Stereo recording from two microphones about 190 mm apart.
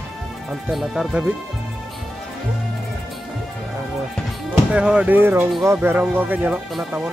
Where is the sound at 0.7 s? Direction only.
Centre (ahead or behind).